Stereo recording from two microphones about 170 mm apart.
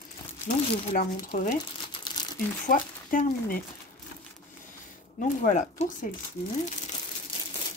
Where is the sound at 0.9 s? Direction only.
50° left (ahead or behind).